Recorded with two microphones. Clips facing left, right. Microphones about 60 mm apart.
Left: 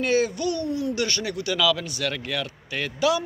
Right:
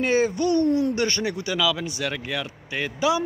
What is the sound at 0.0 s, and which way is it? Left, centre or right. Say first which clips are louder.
Speech: right 1 dB; right.